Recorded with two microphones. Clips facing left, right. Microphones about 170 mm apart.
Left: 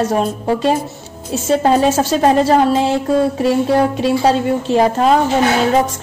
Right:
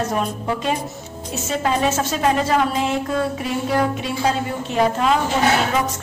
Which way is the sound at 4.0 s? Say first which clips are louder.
Left 8 dB; 30° left (ahead or behind).